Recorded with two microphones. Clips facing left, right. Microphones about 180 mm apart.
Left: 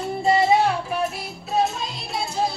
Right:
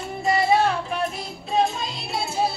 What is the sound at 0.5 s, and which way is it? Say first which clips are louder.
Music: left 1 dB; 15° left (ahead or behind).